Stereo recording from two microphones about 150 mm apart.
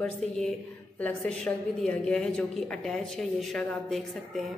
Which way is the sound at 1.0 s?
5° left (ahead or behind).